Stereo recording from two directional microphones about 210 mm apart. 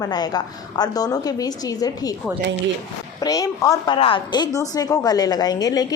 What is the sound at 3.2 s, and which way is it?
A woman's voice, 15° left (ahead or behind).